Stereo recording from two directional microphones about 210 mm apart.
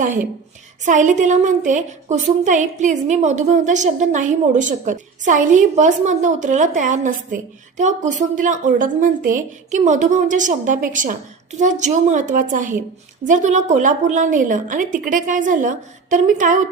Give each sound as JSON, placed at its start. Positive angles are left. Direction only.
{"t": 0.9, "sound": "a woman's voice", "side_deg": -35}